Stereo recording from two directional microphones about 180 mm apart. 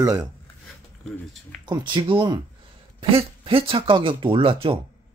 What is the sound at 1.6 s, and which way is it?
Speech, 25° right (ahead or behind).